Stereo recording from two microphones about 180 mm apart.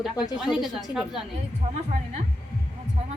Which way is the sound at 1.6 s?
40° right (ahead or behind).